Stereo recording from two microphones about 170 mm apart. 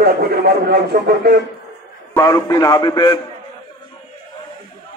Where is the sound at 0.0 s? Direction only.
65° right (ahead or behind).